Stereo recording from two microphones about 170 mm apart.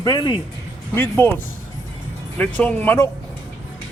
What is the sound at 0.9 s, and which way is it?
Speech, 10° left (ahead or behind).